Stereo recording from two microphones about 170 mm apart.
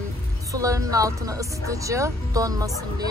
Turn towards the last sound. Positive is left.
turn(degrees=-20)  # may be behind; listen again after turning